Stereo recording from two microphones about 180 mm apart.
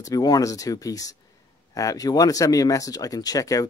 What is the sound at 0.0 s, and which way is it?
Speech, 20° left (ahead or behind).